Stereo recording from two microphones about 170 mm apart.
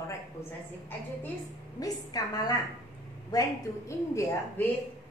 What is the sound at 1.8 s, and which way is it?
A woman's voice, 20° left (ahead or behind).